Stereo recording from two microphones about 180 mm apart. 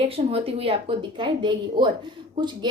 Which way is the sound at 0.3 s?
30° right (ahead or behind).